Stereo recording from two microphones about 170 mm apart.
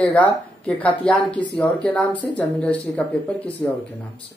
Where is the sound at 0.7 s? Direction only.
10° left (ahead or behind).